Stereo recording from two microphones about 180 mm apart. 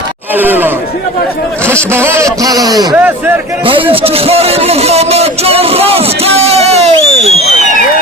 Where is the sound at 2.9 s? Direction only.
10° right (ahead or behind).